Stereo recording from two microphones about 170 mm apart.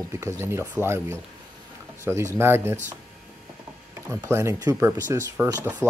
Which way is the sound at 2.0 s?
15° right (ahead or behind).